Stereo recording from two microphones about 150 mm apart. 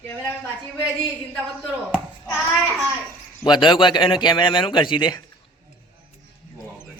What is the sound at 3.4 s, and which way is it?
A man's voice, 30° left (ahead or behind).